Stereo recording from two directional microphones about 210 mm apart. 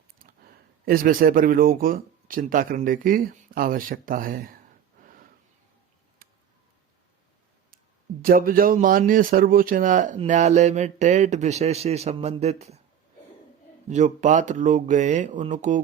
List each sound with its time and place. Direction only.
0.3 s speech: 45° right (ahead or behind)
5.0 s a sound: 40° right (ahead or behind)
8.2 s speech: 40° right (ahead or behind)
13.8 s speech: 35° right (ahead or behind)